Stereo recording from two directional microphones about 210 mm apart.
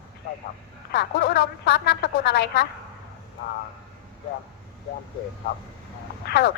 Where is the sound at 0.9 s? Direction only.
50° left (ahead or behind).